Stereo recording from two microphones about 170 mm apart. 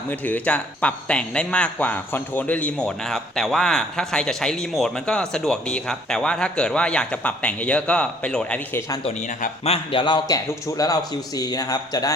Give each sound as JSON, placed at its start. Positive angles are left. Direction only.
{"t": 0.1, "sound": "speech", "side_deg": 10}
{"t": 9.0, "sound": "a man's voice", "side_deg": 40}